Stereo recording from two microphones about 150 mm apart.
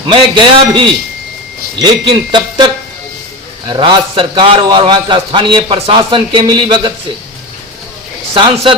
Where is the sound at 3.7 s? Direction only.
30° right (ahead or behind).